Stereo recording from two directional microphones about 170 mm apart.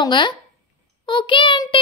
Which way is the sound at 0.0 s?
25° left (ahead or behind).